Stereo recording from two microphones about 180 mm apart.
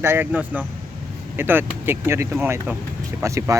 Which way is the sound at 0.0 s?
10° right (ahead or behind).